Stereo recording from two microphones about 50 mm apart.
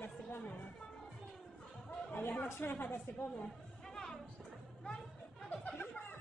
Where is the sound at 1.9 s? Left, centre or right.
Left.